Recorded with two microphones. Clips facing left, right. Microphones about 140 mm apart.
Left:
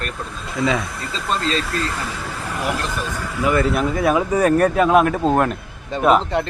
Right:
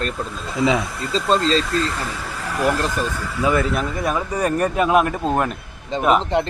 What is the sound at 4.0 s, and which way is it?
Speech, 5° left (ahead or behind).